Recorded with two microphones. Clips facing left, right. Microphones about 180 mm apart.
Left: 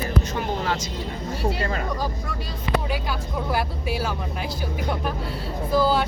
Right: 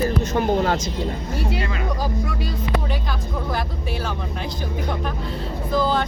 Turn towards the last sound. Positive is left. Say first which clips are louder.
# even
turn(degrees=5)  # may be behind; listen again after turning